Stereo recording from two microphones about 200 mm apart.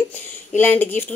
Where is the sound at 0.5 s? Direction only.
10° left (ahead or behind).